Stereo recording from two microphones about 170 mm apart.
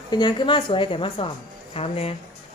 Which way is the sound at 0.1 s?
25° left (ahead or behind).